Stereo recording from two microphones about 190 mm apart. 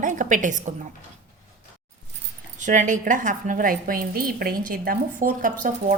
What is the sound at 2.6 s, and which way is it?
A woman's voice, 40° right (ahead or behind).